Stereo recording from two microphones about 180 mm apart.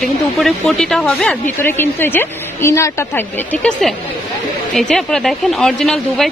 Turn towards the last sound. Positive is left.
turn(degrees=0)  # may be behind; listen again after turning